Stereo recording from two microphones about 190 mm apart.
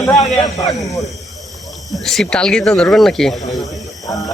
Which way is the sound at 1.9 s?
Centre (ahead or behind).